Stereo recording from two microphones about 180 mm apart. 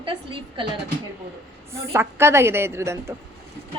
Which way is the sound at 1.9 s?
15° right (ahead or behind).